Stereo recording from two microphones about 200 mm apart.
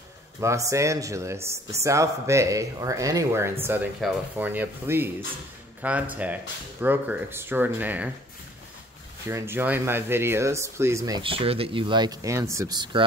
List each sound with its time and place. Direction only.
0.4 s speech: 15° right (ahead or behind)
9.3 s speech: 10° right (ahead or behind)